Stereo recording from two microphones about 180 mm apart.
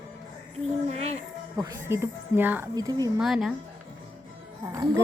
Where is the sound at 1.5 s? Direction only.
20° right (ahead or behind).